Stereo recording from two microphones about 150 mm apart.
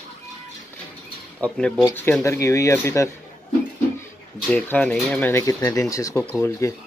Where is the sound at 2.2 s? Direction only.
20° left (ahead or behind).